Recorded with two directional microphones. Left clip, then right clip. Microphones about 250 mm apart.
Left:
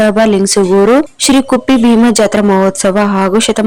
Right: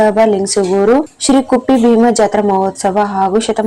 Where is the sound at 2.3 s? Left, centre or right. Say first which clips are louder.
Left 2 dB; left.